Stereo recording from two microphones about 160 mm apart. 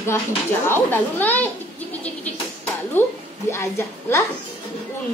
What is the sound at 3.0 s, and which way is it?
Speech, 15° left (ahead or behind).